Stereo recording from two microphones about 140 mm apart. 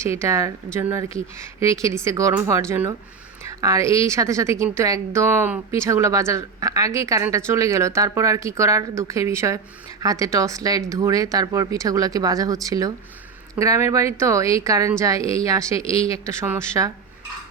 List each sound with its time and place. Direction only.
0.0 s a woman's voice: 20° right (ahead or behind)